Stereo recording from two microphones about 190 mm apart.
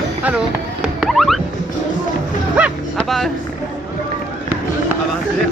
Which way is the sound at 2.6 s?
5° right (ahead or behind).